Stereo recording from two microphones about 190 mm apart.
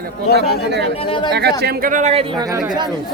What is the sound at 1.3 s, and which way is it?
Speech, 60° right (ahead or behind).